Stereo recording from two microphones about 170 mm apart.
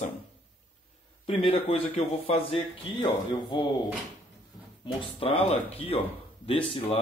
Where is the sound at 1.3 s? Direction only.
35° left (ahead or behind).